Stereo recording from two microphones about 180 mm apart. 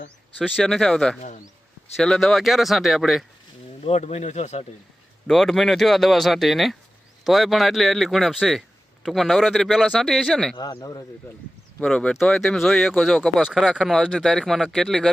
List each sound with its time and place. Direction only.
0.3 s speech: 5° right (ahead or behind)
3.8 s speech: 35° left (ahead or behind)
5.3 s speech: centre (ahead or behind)
10.6 s speech: 20° left (ahead or behind)
11.8 s speech: 5° left (ahead or behind)